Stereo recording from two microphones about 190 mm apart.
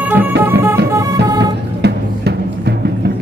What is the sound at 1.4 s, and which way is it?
Music, 60° right (ahead or behind).